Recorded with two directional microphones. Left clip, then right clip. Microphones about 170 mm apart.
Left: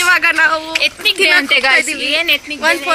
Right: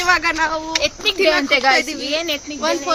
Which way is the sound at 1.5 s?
35° right (ahead or behind).